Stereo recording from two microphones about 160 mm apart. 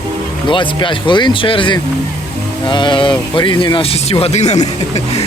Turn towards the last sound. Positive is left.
turn(degrees=45)  # may be behind; listen again after turning